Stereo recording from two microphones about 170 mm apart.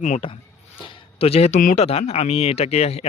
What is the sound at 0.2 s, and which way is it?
Speech, 30° left (ahead or behind).